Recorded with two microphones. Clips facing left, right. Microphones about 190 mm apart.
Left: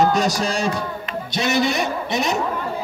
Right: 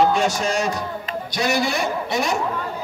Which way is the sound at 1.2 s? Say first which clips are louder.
Left 2 dB; 25° left (ahead or behind).